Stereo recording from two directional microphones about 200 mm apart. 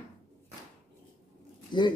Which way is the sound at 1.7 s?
20° left (ahead or behind).